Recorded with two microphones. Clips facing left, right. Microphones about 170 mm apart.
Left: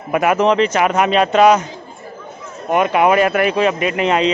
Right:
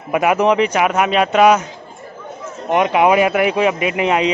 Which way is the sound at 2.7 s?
15° right (ahead or behind).